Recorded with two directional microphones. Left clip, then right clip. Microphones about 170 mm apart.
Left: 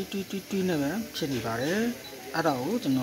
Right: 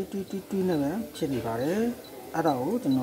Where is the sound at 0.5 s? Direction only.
5° right (ahead or behind).